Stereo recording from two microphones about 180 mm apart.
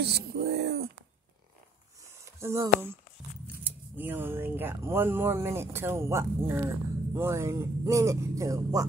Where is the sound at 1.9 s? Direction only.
15° right (ahead or behind).